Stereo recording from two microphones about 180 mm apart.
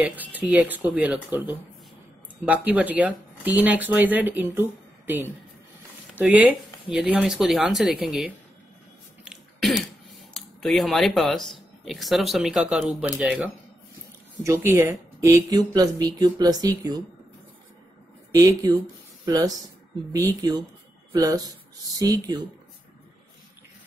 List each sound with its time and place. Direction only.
0.1 s a woman's voice: 10° right (ahead or behind)
9.2 s throat clearing: centre (ahead or behind)
10.3 s speech: centre (ahead or behind); by 17.0 s 20° right (ahead or behind)
18.4 s speech: 20° right (ahead or behind)
20.1 s speech: 20° right (ahead or behind)